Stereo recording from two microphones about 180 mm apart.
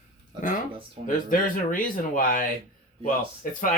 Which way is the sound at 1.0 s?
50° left (ahead or behind).